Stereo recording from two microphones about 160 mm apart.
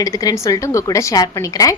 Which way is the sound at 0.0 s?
20° left (ahead or behind).